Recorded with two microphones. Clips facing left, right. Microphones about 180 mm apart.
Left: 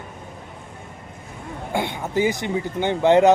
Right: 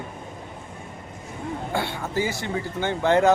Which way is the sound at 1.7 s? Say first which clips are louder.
Left 5 dB; 20° left (ahead or behind).